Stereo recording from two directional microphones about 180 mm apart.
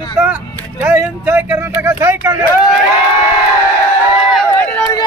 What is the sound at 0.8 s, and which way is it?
Speech, 10° right (ahead or behind).